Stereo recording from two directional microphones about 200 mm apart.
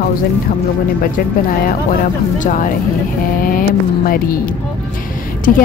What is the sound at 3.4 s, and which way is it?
Vehicle, 45° left (ahead or behind).